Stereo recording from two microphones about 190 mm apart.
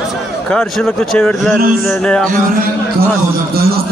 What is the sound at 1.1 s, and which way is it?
Speech, 5° left (ahead or behind).